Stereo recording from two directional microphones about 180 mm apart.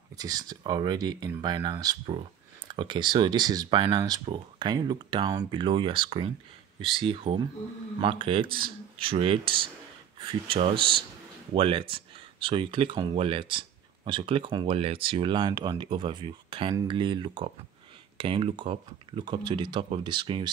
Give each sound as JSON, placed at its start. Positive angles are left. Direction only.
{"t": 0.2, "sound": "speech", "side_deg": -20}